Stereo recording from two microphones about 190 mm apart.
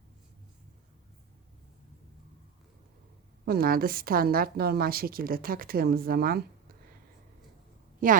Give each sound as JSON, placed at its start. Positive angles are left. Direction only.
{"t": 3.4, "sound": "a woman's voice", "side_deg": -50}
{"t": 8.0, "sound": "a woman's voice", "side_deg": -45}